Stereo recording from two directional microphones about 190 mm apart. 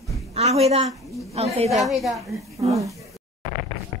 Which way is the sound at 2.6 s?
35° right (ahead or behind).